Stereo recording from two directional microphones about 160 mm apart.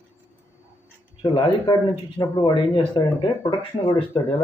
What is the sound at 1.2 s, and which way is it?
A man's voice, 35° left (ahead or behind).